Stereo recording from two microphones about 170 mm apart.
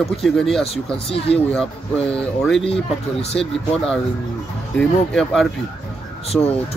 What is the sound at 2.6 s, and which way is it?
Speech, 35° left (ahead or behind).